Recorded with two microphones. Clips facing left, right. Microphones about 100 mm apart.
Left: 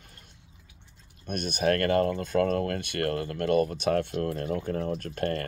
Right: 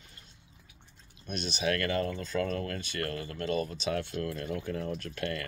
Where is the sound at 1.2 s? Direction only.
50° left (ahead or behind).